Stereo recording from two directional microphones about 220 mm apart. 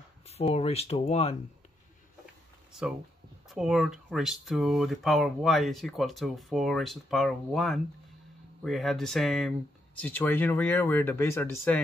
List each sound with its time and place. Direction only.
0.3 s speech: 25° left (ahead or behind)
3.4 s speech: centre (ahead or behind)